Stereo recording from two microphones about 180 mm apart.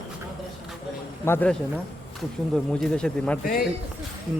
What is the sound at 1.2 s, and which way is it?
Speech, 10° left (ahead or behind).